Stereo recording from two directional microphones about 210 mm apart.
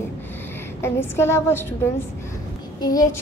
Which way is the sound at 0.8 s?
10° left (ahead or behind).